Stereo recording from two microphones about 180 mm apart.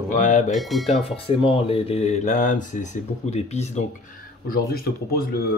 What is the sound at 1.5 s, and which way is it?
Speech, 35° left (ahead or behind).